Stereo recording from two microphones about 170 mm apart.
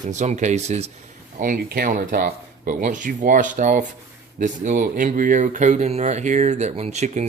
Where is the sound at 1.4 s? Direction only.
55° right (ahead or behind).